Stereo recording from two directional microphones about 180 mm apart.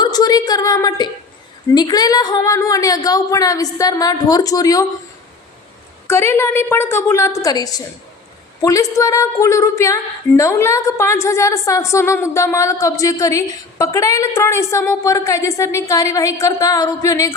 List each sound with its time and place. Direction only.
0.0 s a sound: 20° left (ahead or behind)
1.7 s a woman's voice: 20° left (ahead or behind)
6.1 s a woman's voice: 15° left (ahead or behind)